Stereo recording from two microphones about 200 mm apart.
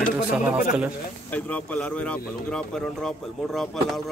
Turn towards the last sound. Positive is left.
turn(degrees=0)  # may be behind; listen again after turning